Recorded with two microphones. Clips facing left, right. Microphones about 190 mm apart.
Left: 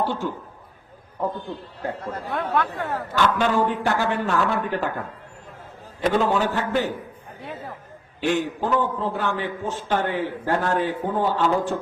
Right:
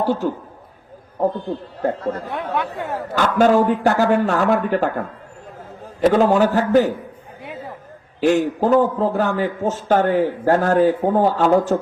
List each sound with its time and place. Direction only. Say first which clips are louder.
0.0 s speech: right 5 dB; 40° right (ahead or behind)
2.3 s speech: even; 15° right (ahead or behind)
3.2 s speech: right 6 dB; 45° right (ahead or behind)
6.1 s speech: right 6 dB; 40° right (ahead or behind)
8.2 s a man's voice: right 7 dB; 40° right (ahead or behind)